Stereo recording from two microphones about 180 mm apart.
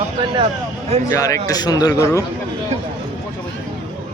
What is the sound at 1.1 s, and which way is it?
A man's voice, 20° left (ahead or behind).